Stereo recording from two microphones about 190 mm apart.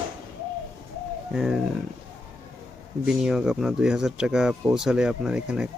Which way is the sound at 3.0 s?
5° right (ahead or behind).